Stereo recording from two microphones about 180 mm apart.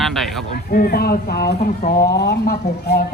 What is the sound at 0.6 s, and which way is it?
Speech, 60° left (ahead or behind).